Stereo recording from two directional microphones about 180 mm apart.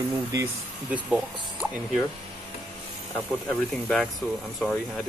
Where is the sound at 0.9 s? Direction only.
5° right (ahead or behind).